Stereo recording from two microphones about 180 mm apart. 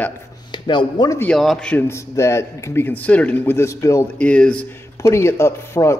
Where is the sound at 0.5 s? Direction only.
25° left (ahead or behind).